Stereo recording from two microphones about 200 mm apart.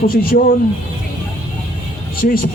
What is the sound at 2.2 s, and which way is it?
Speech, 45° left (ahead or behind).